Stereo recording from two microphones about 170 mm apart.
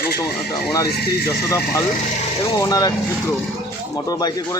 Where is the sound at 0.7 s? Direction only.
20° left (ahead or behind).